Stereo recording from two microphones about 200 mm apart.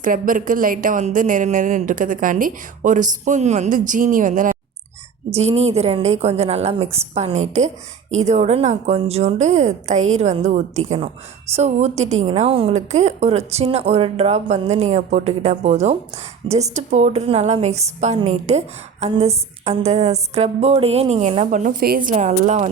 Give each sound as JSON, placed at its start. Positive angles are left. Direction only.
{"t": 0.0, "sound": "speech", "side_deg": -40}